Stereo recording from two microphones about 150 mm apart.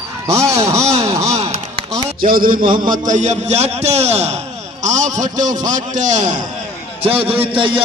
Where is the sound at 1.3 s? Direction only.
50° right (ahead or behind).